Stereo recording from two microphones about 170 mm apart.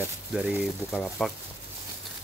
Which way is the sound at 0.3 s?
5° right (ahead or behind).